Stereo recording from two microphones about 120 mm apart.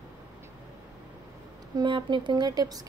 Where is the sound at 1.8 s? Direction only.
40° right (ahead or behind).